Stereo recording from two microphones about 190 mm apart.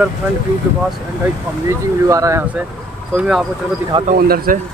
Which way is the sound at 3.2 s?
5° right (ahead or behind).